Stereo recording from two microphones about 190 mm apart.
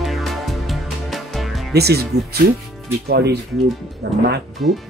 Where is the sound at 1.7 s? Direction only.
60° right (ahead or behind).